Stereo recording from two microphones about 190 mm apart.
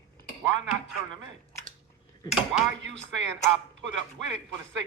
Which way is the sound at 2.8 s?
75° right (ahead or behind).